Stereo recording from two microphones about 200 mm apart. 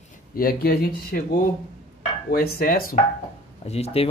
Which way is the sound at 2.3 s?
50° left (ahead or behind).